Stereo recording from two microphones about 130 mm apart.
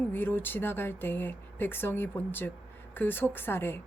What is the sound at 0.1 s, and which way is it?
Speech, 15° left (ahead or behind).